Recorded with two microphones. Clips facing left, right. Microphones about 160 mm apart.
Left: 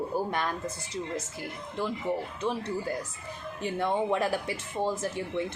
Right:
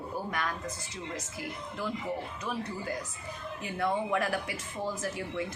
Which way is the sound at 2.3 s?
30° left (ahead or behind).